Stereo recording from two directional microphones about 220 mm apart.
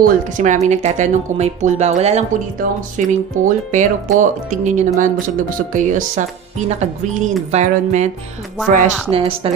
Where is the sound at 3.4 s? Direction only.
35° right (ahead or behind).